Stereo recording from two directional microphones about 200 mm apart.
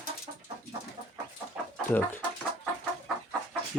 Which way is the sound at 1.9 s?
10° left (ahead or behind).